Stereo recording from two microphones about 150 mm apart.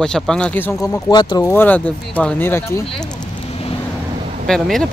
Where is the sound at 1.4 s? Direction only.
10° left (ahead or behind).